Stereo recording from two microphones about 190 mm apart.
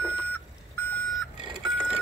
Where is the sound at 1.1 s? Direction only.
Centre (ahead or behind).